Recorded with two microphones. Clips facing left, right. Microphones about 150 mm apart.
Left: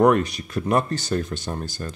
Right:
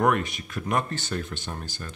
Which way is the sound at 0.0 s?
35° left (ahead or behind).